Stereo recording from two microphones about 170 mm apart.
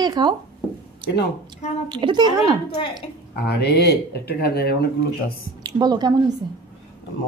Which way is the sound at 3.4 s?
75° left (ahead or behind).